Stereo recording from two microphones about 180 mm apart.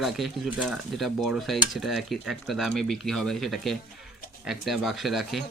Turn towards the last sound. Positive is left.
turn(degrees=0)  # may be behind; listen again after turning